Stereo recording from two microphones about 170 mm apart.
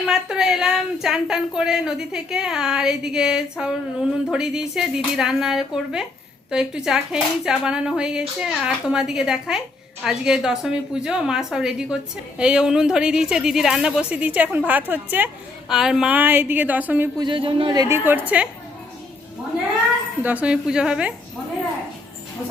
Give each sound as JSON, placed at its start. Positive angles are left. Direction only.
{"t": 0.1, "sound": "a woman's voice", "side_deg": -5}
{"t": 17.2, "sound": "a man's voice", "side_deg": -30}
{"t": 18.1, "sound": "a woman's voice", "side_deg": -10}
{"t": 20.2, "sound": "a woman's voice", "side_deg": -10}